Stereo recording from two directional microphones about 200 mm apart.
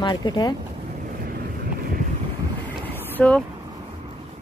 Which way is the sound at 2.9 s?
5° left (ahead or behind).